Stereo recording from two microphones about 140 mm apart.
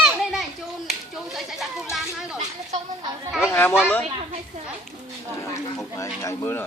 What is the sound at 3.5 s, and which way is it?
Chatter, 15° left (ahead or behind).